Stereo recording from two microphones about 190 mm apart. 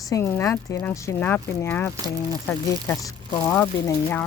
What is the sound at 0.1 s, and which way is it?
Speech, 15° left (ahead or behind).